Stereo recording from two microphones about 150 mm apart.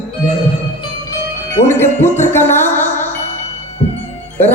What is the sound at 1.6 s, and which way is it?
Speech, 15° left (ahead or behind).